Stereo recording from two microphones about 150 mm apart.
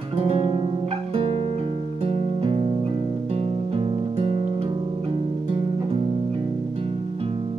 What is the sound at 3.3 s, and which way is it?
Guitar, 40° right (ahead or behind).